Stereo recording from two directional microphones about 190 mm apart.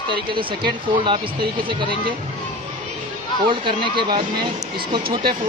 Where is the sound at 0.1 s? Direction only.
25° right (ahead or behind).